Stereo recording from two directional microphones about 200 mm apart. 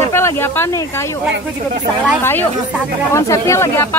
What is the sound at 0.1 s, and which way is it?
Speech, 10° left (ahead or behind).